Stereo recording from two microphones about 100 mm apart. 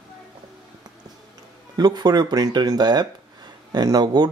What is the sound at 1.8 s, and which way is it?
Speech, 45° right (ahead or behind).